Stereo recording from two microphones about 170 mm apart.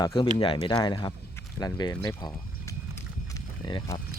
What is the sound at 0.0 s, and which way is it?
Speech, 30° left (ahead or behind).